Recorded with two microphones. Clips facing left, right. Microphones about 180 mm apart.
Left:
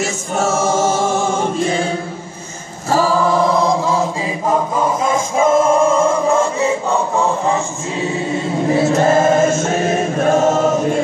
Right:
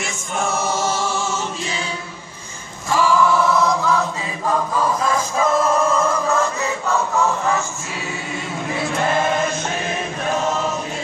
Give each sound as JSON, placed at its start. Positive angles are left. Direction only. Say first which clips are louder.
{"t": 0.0, "sound": "choir", "louder": "left 6 dB", "side_deg": 45}
{"t": 2.9, "sound": "chant", "louder": "left 2 dB", "side_deg": 40}